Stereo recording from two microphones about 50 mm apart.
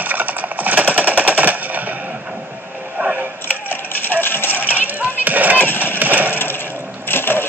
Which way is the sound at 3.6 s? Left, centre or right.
Left.